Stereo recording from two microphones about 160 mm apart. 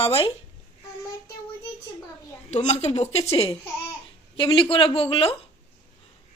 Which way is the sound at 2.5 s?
45° left (ahead or behind).